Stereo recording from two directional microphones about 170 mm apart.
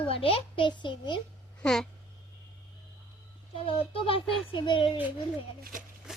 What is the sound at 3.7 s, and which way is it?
Speech, 30° left (ahead or behind).